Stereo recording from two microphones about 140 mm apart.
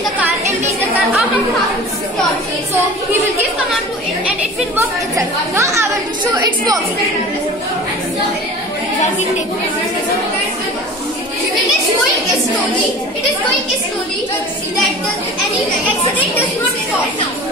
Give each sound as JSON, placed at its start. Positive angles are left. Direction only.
{"t": 4.7, "sound": "speech", "side_deg": -20}